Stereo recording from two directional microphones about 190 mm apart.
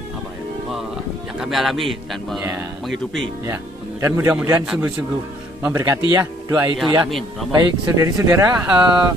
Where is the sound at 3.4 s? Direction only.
15° right (ahead or behind).